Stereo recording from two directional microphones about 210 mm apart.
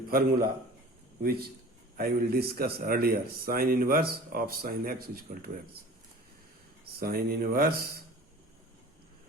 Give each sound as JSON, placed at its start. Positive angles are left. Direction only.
{"t": 0.1, "sound": "a man's voice", "side_deg": -45}
{"t": 6.9, "sound": "a man's voice", "side_deg": -45}